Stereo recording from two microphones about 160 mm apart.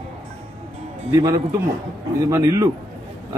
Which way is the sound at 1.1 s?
25° right (ahead or behind).